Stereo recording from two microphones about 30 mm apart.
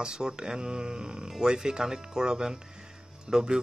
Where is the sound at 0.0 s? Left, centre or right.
Right.